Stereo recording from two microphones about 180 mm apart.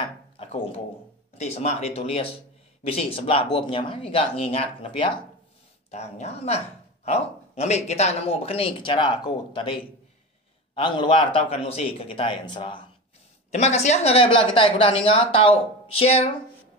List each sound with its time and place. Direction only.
0.4 s a sound: 35° left (ahead or behind)
1.4 s a man's voice: 35° left (ahead or behind)
13.5 s speech: 40° left (ahead or behind)